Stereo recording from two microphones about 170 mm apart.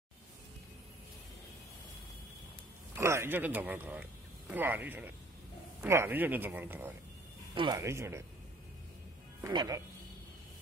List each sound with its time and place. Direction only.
3.0 s a man's voice: 15° right (ahead or behind)
7.5 s a man's voice: 25° right (ahead or behind)
9.4 s speech: 25° right (ahead or behind)